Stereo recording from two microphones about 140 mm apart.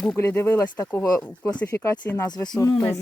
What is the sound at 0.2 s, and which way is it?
Speech, 20° left (ahead or behind).